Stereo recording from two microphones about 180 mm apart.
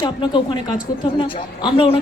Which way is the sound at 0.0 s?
25° left (ahead or behind).